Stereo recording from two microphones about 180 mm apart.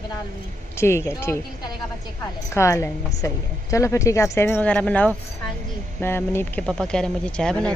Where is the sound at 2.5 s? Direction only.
15° left (ahead or behind).